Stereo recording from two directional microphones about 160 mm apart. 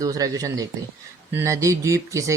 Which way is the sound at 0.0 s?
20° right (ahead or behind).